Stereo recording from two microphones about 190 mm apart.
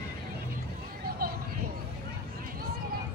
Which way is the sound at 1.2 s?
50° right (ahead or behind).